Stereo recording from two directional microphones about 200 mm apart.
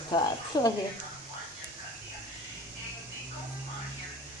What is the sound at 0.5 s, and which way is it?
Speech, 20° left (ahead or behind).